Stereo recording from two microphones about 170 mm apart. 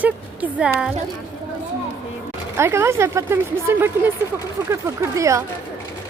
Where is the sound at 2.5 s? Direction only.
15° right (ahead or behind).